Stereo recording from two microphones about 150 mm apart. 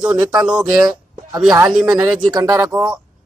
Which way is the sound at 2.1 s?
25° right (ahead or behind).